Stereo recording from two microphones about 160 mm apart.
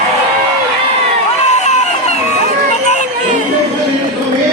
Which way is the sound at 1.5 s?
45° left (ahead or behind).